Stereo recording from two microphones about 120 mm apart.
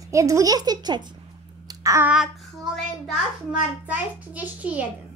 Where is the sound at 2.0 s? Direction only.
10° right (ahead or behind).